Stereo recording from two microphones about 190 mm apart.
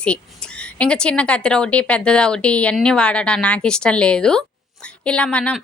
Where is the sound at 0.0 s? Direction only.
5° left (ahead or behind).